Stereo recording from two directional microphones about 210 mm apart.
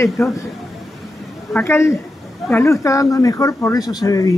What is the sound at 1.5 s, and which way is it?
Speech, 10° left (ahead or behind).